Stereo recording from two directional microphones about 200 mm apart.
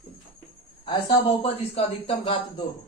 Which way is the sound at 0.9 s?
25° left (ahead or behind).